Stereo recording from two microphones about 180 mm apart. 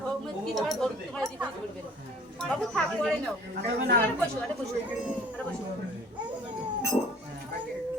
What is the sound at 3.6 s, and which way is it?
Speech, 60° right (ahead or behind).